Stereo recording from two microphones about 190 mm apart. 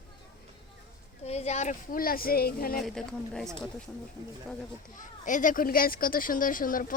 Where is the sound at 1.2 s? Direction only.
35° left (ahead or behind); by 2.7 s 50° left (ahead or behind).